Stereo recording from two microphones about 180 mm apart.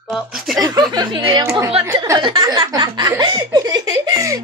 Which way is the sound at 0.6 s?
25° right (ahead or behind).